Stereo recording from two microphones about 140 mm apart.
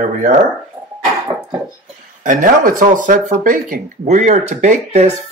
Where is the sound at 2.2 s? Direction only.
70° right (ahead or behind).